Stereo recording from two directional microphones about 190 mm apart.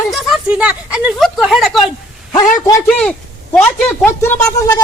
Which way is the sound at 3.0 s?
5° left (ahead or behind).